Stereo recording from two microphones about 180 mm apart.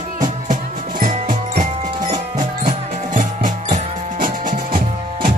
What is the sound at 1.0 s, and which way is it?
Music, 40° right (ahead or behind).